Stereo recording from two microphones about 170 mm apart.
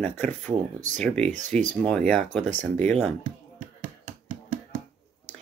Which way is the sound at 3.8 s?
50° right (ahead or behind).